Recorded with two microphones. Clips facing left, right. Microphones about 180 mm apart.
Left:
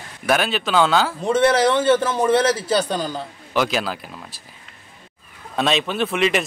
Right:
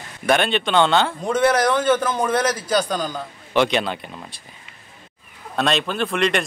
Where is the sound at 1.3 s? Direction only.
30° left (ahead or behind).